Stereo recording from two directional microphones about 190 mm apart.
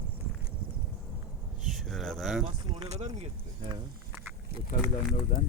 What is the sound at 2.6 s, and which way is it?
Speech, 25° right (ahead or behind).